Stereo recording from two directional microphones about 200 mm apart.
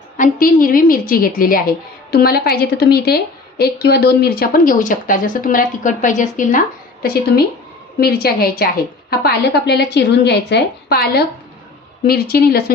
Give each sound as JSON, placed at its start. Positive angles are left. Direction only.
{"t": 0.2, "sound": "a woman's voice", "side_deg": 45}